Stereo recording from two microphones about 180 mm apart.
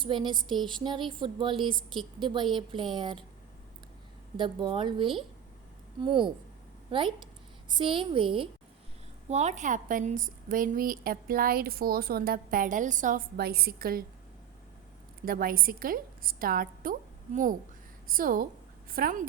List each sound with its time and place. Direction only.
0.0 s a woman's voice: 25° right (ahead or behind)
1.9 s a woman's voice: centre (ahead or behind)
2.2 s a woman's voice: 25° right (ahead or behind)
4.4 s a woman's voice: 25° right (ahead or behind)
7.7 s a woman's voice: 25° right (ahead or behind)
9.3 s a woman's voice: 40° right (ahead or behind); by 14.0 s 55° right (ahead or behind)
15.2 s a woman's voice: 55° right (ahead or behind)